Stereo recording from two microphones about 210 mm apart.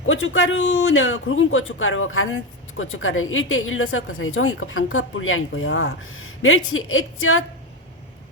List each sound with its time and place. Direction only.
0.0 s a man's voice: 70° left (ahead or behind)